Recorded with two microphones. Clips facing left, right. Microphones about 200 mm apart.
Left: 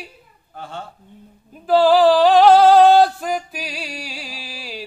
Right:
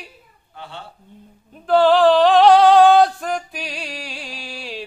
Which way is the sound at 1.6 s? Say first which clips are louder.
Even; 5° left (ahead or behind).